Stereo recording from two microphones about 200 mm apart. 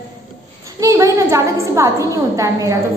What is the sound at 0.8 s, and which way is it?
A woman's voice, 15° right (ahead or behind).